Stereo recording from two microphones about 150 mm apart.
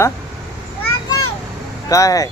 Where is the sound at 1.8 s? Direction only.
20° left (ahead or behind).